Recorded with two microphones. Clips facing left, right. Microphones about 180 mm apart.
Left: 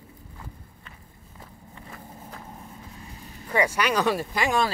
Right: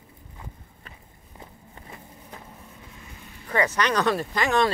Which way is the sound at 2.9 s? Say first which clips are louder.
Left 3 dB; 35° left (ahead or behind).